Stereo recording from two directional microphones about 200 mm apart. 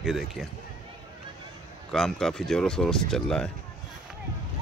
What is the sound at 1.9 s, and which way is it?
Speech, centre (ahead or behind).